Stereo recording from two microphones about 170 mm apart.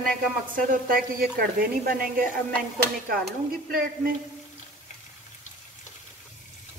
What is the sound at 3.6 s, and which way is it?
Speech, 60° right (ahead or behind).